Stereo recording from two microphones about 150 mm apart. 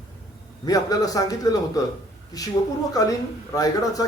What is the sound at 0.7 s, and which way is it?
Speech, 25° left (ahead or behind).